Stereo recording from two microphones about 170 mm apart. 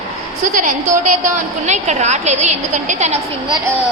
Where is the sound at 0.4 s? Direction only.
50° right (ahead or behind).